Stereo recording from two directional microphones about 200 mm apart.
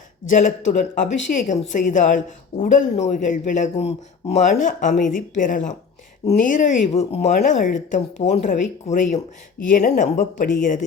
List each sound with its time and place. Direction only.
0.3 s speech: 40° left (ahead or behind)